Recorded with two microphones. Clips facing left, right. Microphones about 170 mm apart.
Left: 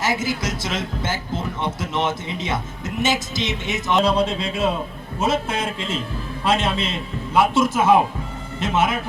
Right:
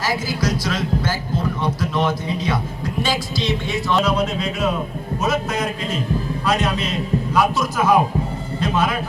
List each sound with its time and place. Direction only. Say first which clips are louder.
0.0 s a man's voice: right 1 dB; 25° left (ahead or behind)